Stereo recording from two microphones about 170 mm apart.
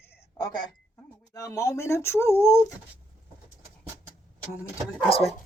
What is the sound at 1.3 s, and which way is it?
Speech, 20° left (ahead or behind).